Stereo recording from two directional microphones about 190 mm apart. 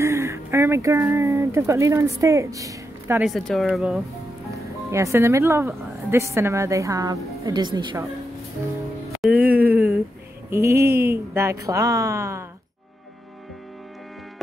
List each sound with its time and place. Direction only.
0.0 s speech: 15° right (ahead or behind)
3.3 s speech: centre (ahead or behind)
4.5 s speech: 15° right (ahead or behind)
9.2 s music: 10° right (ahead or behind)
10.5 s speech: 15° right (ahead or behind)